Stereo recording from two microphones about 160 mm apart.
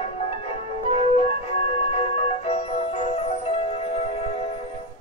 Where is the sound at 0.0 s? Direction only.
40° left (ahead or behind).